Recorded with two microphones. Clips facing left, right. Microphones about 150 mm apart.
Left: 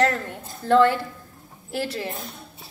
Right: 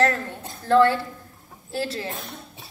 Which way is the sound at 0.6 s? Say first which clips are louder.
Even; 20° left (ahead or behind).